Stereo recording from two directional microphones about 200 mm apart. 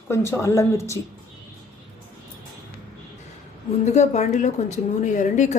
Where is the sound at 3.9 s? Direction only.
35° left (ahead or behind).